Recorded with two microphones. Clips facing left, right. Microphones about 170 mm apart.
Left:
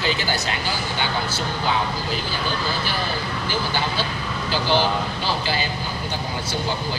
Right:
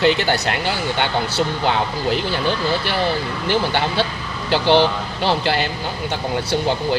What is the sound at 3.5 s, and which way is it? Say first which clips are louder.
Speech: right 7 dB; 65° right (ahead or behind).